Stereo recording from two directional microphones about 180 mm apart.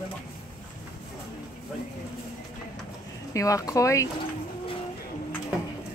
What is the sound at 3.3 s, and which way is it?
Speech, 15° left (ahead or behind).